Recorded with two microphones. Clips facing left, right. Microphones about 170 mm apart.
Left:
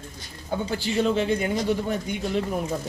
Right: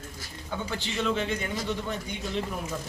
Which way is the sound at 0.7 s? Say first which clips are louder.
Left 6 dB; 35° left (ahead or behind).